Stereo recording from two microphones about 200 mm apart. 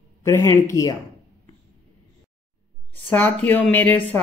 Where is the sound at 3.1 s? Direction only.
10° left (ahead or behind).